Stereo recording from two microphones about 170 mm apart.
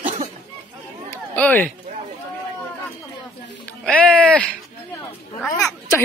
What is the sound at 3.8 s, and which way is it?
Music, 5° left (ahead or behind).